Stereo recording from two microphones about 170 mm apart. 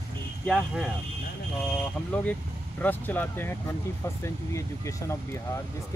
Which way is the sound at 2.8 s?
10° left (ahead or behind).